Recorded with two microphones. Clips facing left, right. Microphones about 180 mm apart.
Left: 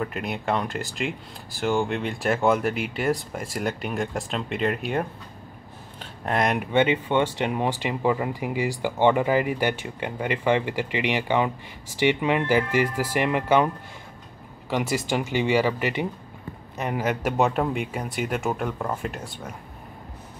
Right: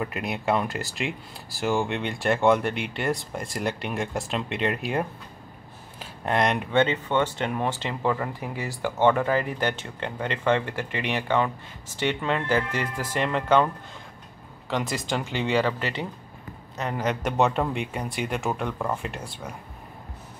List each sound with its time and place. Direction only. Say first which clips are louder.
0.0 s speech: even; 5° right (ahead or behind); by 13.7 s 10° left (ahead or behind)
14.7 s speech: left 3 dB; 10° left (ahead or behind)